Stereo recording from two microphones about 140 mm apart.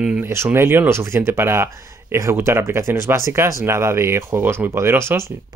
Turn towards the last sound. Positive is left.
turn(degrees=-15)  # may be behind; listen again after turning